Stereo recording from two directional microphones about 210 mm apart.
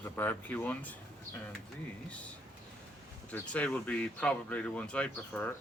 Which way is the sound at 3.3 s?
5° left (ahead or behind).